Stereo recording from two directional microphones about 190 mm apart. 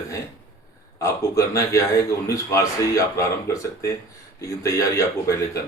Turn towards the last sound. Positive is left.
turn(degrees=15)  # may be behind; listen again after turning